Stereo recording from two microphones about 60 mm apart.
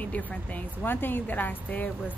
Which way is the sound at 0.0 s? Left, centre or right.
Left.